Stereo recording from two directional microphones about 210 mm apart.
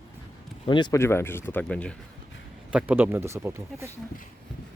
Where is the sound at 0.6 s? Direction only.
20° left (ahead or behind); by 1.9 s 5° left (ahead or behind).